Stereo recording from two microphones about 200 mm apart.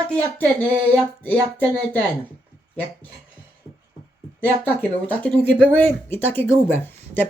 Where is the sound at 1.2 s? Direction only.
10° left (ahead or behind).